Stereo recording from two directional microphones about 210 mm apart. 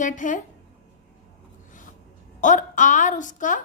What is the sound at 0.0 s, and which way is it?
Speech, 40° left (ahead or behind).